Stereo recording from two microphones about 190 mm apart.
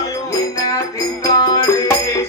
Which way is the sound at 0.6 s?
20° left (ahead or behind).